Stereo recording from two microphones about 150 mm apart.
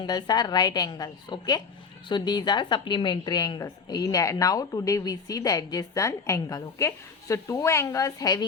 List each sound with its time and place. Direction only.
0.0 s a woman's voice: 25° left (ahead or behind)